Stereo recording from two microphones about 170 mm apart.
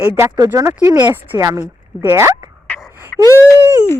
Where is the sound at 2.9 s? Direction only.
10° right (ahead or behind).